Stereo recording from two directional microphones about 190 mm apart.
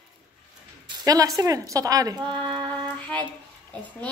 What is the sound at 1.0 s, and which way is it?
A woman's voice, 20° right (ahead or behind).